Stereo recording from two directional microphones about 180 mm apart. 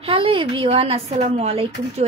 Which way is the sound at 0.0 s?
30° right (ahead or behind).